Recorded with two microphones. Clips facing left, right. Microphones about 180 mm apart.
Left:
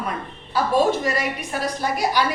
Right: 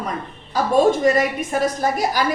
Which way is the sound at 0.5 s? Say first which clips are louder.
Right 3 dB; 45° right (ahead or behind).